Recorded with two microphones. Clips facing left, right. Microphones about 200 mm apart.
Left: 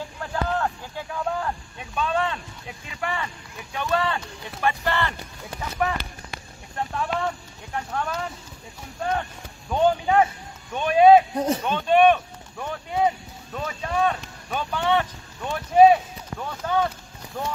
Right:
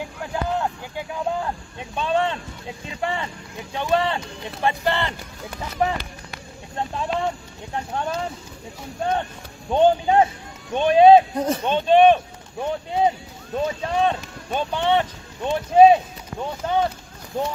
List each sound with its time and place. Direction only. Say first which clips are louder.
0.3 s speech: right 1 dB; 15° right (ahead or behind)
9.7 s speech: right 4 dB; 25° right (ahead or behind)